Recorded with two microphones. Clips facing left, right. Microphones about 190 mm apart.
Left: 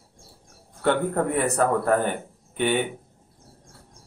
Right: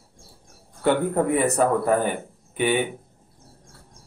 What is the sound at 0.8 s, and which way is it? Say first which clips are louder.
Speech: right 2 dB; 10° right (ahead or behind).